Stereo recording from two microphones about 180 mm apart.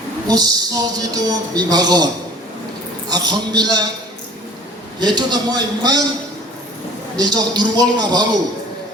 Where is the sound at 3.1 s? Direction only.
20° right (ahead or behind).